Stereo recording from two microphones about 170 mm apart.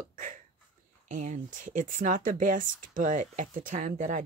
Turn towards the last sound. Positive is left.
turn(degrees=-50)  # may be behind; listen again after turning